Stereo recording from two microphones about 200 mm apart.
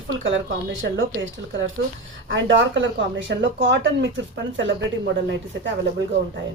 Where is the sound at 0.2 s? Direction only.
70° right (ahead or behind).